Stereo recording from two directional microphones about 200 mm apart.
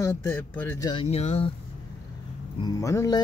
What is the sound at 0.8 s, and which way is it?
Speech, 30° left (ahead or behind).